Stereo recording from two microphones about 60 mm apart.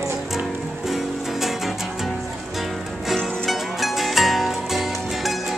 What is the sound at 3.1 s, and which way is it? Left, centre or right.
Music, centre.